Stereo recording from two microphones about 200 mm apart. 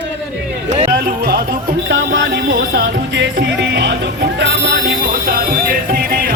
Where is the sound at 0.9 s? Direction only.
50° right (ahead or behind).